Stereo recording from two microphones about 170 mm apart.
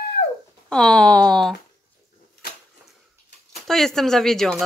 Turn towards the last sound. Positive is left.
turn(degrees=5)  # may be behind; listen again after turning